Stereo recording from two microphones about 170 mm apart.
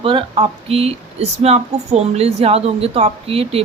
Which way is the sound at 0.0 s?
30° right (ahead or behind).